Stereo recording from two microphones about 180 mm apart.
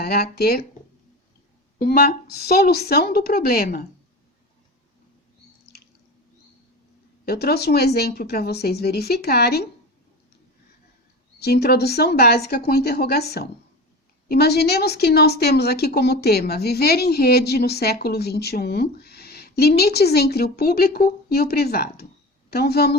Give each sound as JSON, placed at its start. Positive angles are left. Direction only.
{"t": 0.0, "sound": "a woman's voice", "side_deg": 60}
{"t": 1.8, "sound": "a woman's voice", "side_deg": 55}
{"t": 5.7, "sound": "drip", "side_deg": 65}
{"t": 7.3, "sound": "a woman's voice", "side_deg": 60}
{"t": 11.3, "sound": "a woman's voice", "side_deg": 65}